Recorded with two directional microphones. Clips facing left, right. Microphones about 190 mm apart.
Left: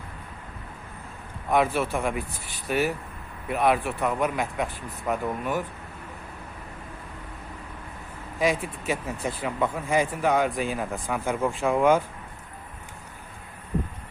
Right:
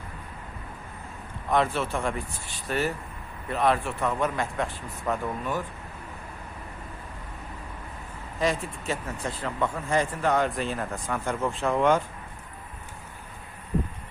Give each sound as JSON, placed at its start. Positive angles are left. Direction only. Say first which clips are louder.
{"t": 1.5, "sound": "speech", "louder": "left 2 dB", "side_deg": 5}
{"t": 8.4, "sound": "speech", "louder": "left 2 dB", "side_deg": 10}